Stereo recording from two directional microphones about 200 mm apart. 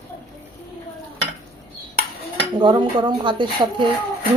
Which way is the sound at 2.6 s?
25° right (ahead or behind).